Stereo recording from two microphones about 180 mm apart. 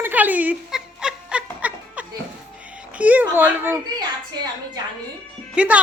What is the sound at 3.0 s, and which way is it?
Speech, 10° right (ahead or behind).